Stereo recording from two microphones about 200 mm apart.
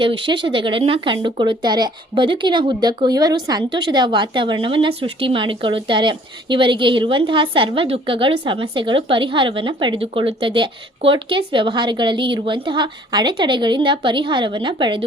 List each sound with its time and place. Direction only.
0.0 s speech: 25° right (ahead or behind)